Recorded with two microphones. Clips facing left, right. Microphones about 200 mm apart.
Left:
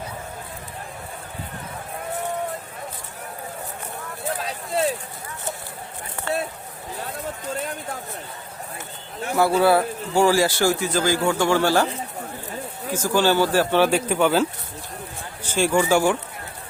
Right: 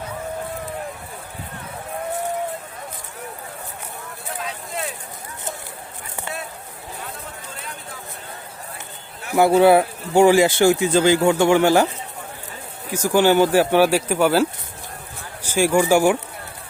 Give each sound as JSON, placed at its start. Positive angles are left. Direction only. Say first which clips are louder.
{"t": 4.4, "sound": "a sound", "louder": "left 3 dB", "side_deg": 35}
{"t": 9.4, "sound": "a man's voice", "louder": "right 4 dB", "side_deg": -20}
{"t": 12.9, "sound": "speech", "louder": "right 4 dB", "side_deg": -15}
{"t": 15.4, "sound": "speech", "louder": "right 3 dB", "side_deg": -10}